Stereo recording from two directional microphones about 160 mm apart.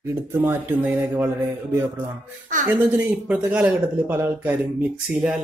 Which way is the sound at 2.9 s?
10° right (ahead or behind).